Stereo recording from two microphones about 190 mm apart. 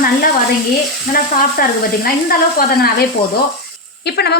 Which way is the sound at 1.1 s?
50° left (ahead or behind).